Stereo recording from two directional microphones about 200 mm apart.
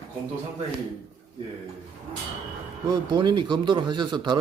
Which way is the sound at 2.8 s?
20° right (ahead or behind).